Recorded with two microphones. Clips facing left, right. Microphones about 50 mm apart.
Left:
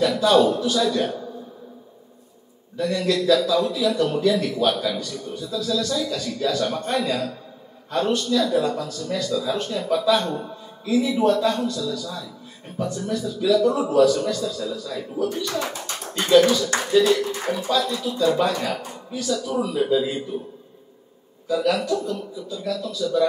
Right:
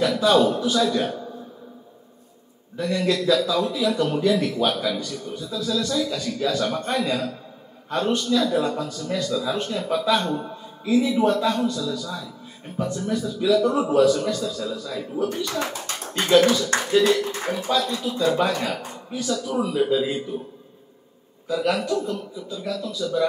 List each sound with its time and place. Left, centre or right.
0.0 s a man's voice: right
2.8 s a man's voice: right
21.5 s a man's voice: right